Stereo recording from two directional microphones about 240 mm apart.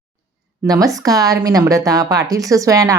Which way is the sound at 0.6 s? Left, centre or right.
Centre.